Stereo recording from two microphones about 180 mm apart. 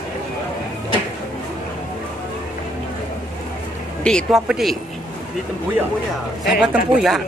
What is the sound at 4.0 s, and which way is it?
Speech, 5° left (ahead or behind).